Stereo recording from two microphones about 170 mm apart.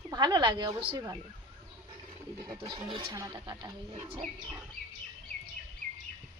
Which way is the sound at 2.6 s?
25° right (ahead or behind).